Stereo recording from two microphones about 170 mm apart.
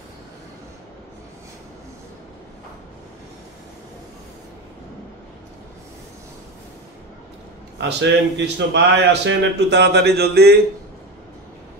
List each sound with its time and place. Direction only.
8.0 s speech: 90° right; by 10.6 s 70° right (ahead or behind)